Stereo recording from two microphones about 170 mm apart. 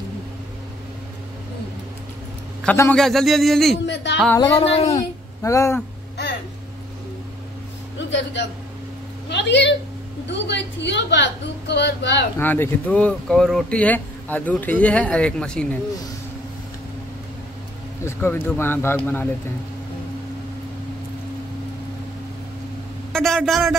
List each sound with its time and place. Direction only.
2.6 s a man's voice: 10° left (ahead or behind)
3.8 s a woman's voice: 90° left
4.4 s speech: 30° left (ahead or behind)
5.4 s speech: 15° left (ahead or behind)
9.3 s a woman's voice: 90° left
12.4 s speech: 10° left (ahead or behind)
18.0 s speech: 15° left (ahead or behind)
23.1 s a man's voice: centre (ahead or behind)